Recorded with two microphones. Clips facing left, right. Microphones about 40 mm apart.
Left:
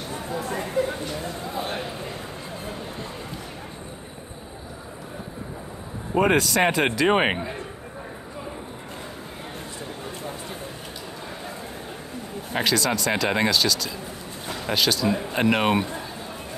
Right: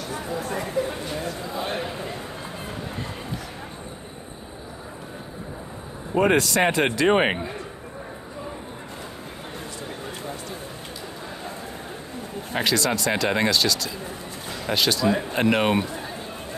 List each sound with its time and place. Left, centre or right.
0.5 s a sound: left
6.1 s speech: centre
12.5 s speech: centre